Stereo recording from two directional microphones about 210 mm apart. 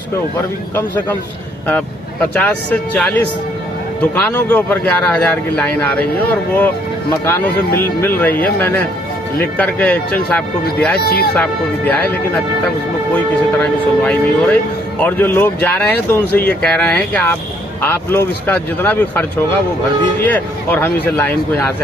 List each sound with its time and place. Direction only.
2.3 s speech: 5° left (ahead or behind)
11.0 s speech: 50° left (ahead or behind)
11.3 s speech: 10° left (ahead or behind)